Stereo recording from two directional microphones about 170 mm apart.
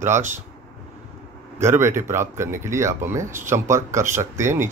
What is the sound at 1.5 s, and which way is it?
A man's voice, 15° right (ahead or behind).